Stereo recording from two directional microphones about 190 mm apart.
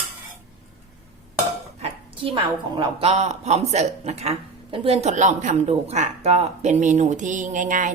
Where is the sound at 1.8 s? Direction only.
30° right (ahead or behind).